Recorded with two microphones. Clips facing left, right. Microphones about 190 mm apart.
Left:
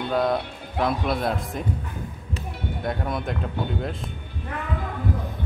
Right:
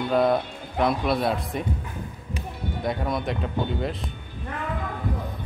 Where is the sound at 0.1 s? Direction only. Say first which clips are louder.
Right 2 dB; centre (ahead or behind).